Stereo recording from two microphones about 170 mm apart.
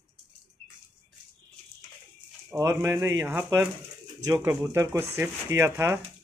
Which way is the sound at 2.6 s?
15° right (ahead or behind).